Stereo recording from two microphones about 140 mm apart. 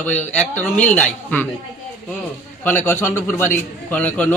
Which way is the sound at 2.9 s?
15° left (ahead or behind).